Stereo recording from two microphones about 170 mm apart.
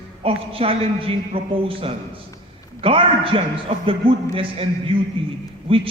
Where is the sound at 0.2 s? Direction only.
35° right (ahead or behind).